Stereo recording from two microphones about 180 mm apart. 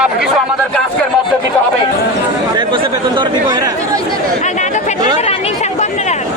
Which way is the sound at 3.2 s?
20° right (ahead or behind).